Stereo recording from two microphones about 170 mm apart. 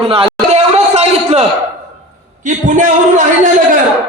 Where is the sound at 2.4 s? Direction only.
45° right (ahead or behind).